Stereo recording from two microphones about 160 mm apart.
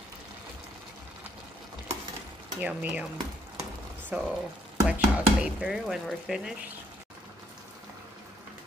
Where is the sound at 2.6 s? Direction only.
10° right (ahead or behind).